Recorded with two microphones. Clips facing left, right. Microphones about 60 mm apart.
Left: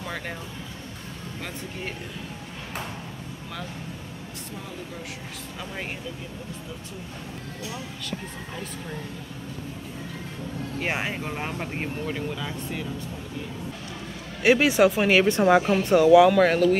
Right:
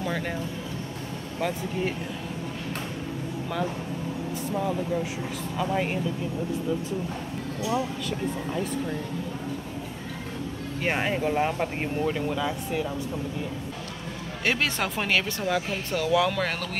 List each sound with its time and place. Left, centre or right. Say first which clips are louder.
5.6 s speech: right 9 dB; centre
10.8 s speech: right 3 dB; centre
14.4 s speech: left 9 dB; centre
15.2 s speech: left 9 dB; left
15.9 s speech: left 9 dB; centre